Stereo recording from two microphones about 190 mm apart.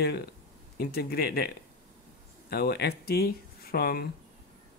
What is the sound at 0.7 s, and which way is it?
Speech, 55° left (ahead or behind).